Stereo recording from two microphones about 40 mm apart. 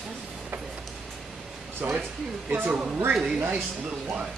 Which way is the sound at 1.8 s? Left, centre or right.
Right.